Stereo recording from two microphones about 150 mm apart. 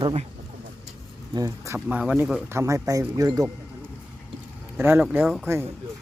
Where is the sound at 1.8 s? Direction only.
10° right (ahead or behind).